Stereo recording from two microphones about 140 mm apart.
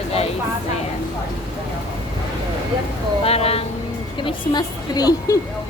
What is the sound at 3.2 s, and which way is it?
Speech, 45° left (ahead or behind).